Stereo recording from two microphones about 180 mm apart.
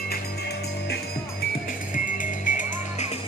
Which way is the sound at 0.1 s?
65° left (ahead or behind).